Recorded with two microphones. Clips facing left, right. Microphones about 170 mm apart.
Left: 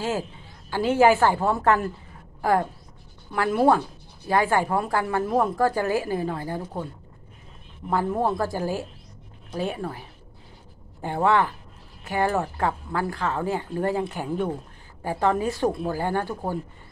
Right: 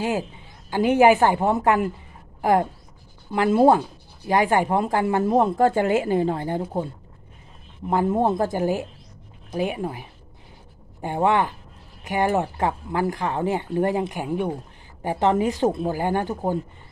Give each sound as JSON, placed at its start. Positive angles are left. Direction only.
{"t": 0.7, "sound": "speech", "side_deg": -15}
{"t": 3.3, "sound": "speech", "side_deg": -25}
{"t": 7.9, "sound": "speech", "side_deg": -20}